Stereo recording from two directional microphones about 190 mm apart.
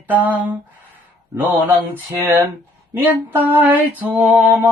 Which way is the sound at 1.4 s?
10° right (ahead or behind).